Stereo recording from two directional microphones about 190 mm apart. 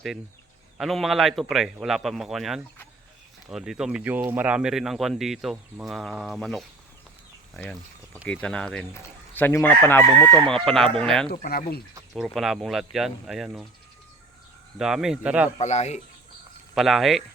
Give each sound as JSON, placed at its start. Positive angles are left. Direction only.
{"t": 0.8, "sound": "speech", "side_deg": 0}
{"t": 8.3, "sound": "speech", "side_deg": 5}
{"t": 10.5, "sound": "speech", "side_deg": 5}
{"t": 11.3, "sound": "speech", "side_deg": 55}
{"t": 12.1, "sound": "speech", "side_deg": 0}
{"t": 14.8, "sound": "speech", "side_deg": -5}
{"t": 15.5, "sound": "speech", "side_deg": 35}
{"t": 16.7, "sound": "speech", "side_deg": 0}